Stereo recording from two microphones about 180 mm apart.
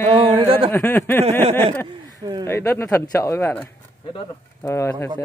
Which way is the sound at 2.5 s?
15° left (ahead or behind).